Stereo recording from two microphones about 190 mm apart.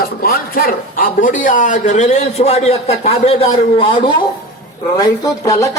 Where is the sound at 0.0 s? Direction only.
50° left (ahead or behind).